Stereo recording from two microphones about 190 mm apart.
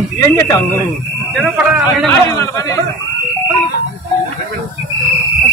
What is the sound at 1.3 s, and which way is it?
Speech, 5° right (ahead or behind).